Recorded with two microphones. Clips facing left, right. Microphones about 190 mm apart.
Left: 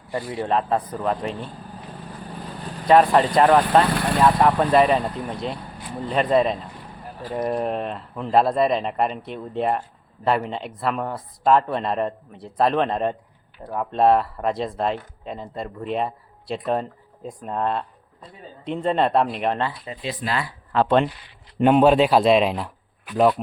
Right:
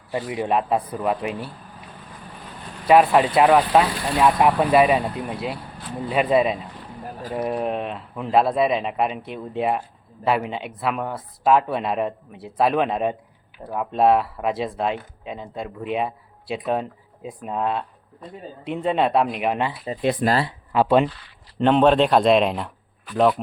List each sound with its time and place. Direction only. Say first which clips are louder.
0.1 s speech: right 1 dB; 10° right (ahead or behind)
2.8 s speech: even; 5° right (ahead or behind)
20.0 s speech: right 9 dB; 55° right (ahead or behind)
20.7 s speech: right 1 dB; 5° right (ahead or behind)
21.1 s speech: even; 20° left (ahead or behind)
21.6 s speech: left 1 dB; 10° left (ahead or behind)